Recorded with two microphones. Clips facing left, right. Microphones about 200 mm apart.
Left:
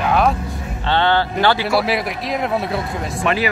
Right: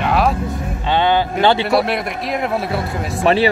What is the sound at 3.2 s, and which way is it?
Speech, 30° right (ahead or behind).